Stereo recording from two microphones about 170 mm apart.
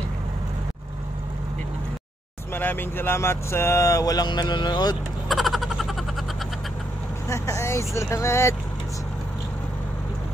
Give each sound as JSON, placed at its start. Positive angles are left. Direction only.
{"t": 2.5, "sound": "speech", "side_deg": 10}
{"t": 5.3, "sound": "a sound", "side_deg": 0}
{"t": 7.2, "sound": "speech", "side_deg": 15}